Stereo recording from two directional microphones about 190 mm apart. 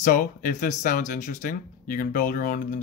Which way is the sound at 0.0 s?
45° left (ahead or behind).